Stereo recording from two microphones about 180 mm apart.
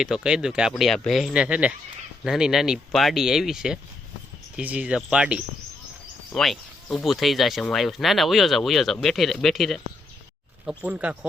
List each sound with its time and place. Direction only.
0.0 s speech: 5° right (ahead or behind)
10.8 s speech: 5° right (ahead or behind)